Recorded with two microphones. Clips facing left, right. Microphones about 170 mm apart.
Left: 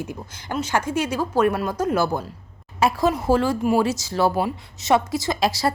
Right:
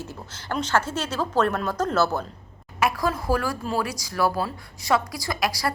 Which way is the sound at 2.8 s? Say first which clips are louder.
Left 4 dB; 25° left (ahead or behind).